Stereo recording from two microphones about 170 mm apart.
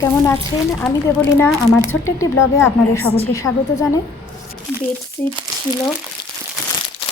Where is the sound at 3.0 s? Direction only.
35° left (ahead or behind).